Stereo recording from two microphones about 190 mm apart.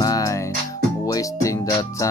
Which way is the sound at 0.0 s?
20° left (ahead or behind).